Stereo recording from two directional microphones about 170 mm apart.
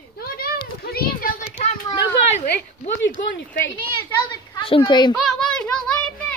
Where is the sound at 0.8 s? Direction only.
65° left (ahead or behind).